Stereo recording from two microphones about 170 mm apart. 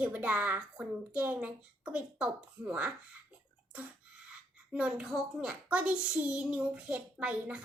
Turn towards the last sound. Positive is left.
turn(degrees=-5)  # may be behind; listen again after turning